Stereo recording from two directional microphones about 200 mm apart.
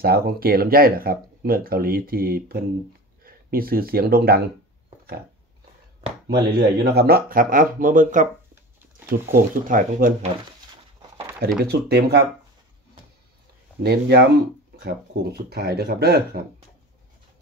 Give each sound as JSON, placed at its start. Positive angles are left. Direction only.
{"t": 0.0, "sound": "speech", "side_deg": -50}
{"t": 6.3, "sound": "speech", "side_deg": -50}
{"t": 11.0, "sound": "a sound", "side_deg": -15}
{"t": 11.6, "sound": "speech", "side_deg": -55}
{"t": 13.8, "sound": "speech", "side_deg": -55}